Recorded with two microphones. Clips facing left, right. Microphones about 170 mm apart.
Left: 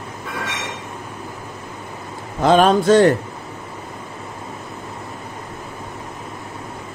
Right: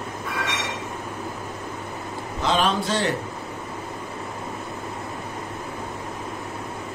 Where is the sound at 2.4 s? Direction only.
50° left (ahead or behind).